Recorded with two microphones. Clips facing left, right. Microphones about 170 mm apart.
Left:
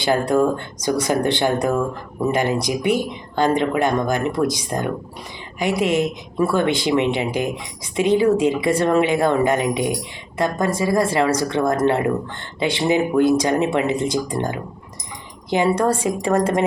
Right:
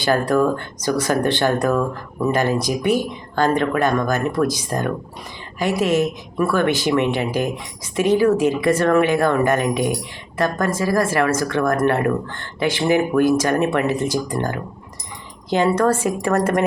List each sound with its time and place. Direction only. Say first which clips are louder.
0.0 s speech: even; 20° left (ahead or behind)